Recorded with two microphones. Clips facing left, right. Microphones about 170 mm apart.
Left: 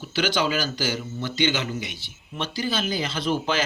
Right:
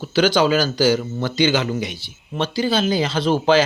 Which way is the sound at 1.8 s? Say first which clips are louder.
Right 8 dB; 35° right (ahead or behind).